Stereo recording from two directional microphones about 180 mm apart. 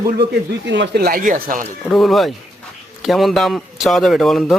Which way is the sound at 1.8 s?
Centre (ahead or behind).